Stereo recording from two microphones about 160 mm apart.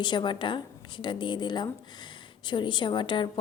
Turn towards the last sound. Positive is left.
turn(degrees=30)  # may be behind; listen again after turning